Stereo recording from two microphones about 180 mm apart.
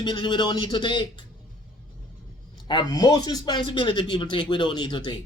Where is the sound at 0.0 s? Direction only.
25° left (ahead or behind).